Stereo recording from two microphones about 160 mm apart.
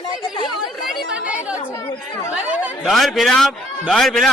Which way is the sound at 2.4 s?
10° right (ahead or behind).